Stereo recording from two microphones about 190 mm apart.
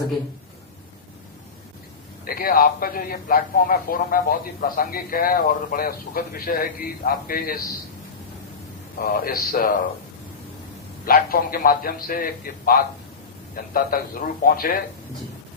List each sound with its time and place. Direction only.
2.2 s a man's voice: 50° left (ahead or behind)
9.0 s a man's voice: 50° left (ahead or behind)
11.0 s a man's voice: 50° left (ahead or behind)